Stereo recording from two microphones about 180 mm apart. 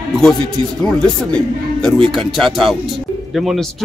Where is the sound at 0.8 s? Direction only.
5° left (ahead or behind).